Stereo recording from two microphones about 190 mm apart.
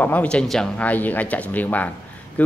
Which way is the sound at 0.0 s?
10° left (ahead or behind).